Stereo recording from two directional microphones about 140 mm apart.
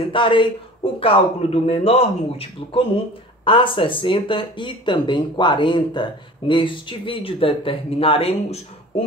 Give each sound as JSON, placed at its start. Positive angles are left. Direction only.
{"t": 0.1, "sound": "speech", "side_deg": 35}